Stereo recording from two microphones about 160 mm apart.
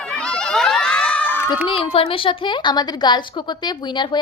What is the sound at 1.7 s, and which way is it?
A woman's voice, 35° left (ahead or behind).